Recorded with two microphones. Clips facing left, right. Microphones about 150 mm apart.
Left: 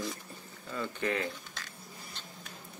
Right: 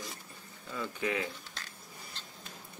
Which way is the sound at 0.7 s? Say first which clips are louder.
Left 1 dB; 5° right (ahead or behind).